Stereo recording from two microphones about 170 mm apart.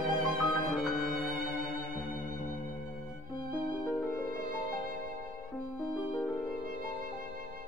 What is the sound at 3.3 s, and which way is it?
Music, 25° left (ahead or behind).